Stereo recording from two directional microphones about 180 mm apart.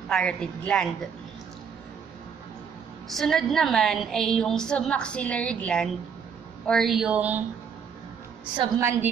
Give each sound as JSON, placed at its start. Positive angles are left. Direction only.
{"t": 0.1, "sound": "a woman's voice", "side_deg": 5}
{"t": 3.1, "sound": "a woman's voice", "side_deg": 0}
{"t": 8.5, "sound": "a woman's voice", "side_deg": -15}